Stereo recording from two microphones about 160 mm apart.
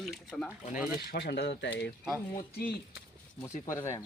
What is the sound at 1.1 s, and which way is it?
Speech, 90° left.